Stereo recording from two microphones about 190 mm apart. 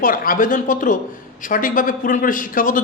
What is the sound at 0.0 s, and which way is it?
Speech, 45° left (ahead or behind).